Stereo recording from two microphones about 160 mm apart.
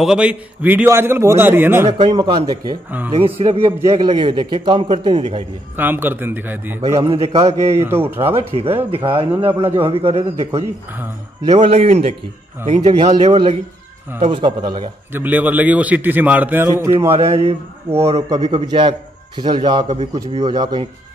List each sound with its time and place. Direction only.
0.0 s a man's voice: 5° right (ahead or behind)
2.0 s a man's voice: 30° right (ahead or behind)
3.2 s a man's voice: 35° right (ahead or behind)
5.8 s a man's voice: 10° right (ahead or behind)
7.1 s a man's voice: 40° right (ahead or behind)
7.4 s a man's voice: 15° right (ahead or behind)
8.7 s a man's voice: 35° right (ahead or behind)
15.1 s a man's voice: 10° right (ahead or behind)
17.1 s a man's voice: 40° right (ahead or behind)
17.8 s a man's voice: 15° right (ahead or behind)
18.3 s a man's voice: 30° right (ahead or behind)